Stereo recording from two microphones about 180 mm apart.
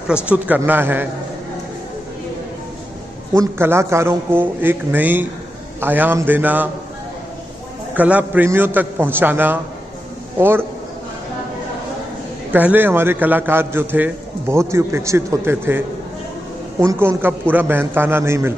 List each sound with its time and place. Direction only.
0.1 s a man's voice: 10° right (ahead or behind)
3.3 s a man's voice: 15° right (ahead or behind)
7.9 s a man's voice: 10° right (ahead or behind)
12.5 s a man's voice: 10° right (ahead or behind)
16.8 s a man's voice: 15° right (ahead or behind)